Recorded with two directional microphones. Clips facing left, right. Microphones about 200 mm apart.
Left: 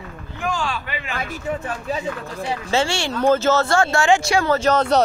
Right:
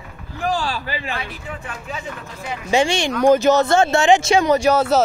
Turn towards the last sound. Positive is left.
turn(degrees=-10)  # may be behind; listen again after turning